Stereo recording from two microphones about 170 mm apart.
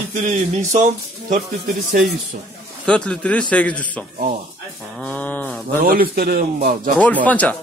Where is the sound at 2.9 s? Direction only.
5° left (ahead or behind).